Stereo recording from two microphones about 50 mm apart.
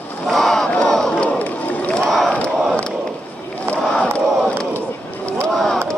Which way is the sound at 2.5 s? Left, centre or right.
Centre.